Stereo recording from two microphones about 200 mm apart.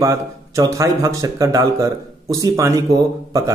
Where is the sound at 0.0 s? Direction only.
15° right (ahead or behind).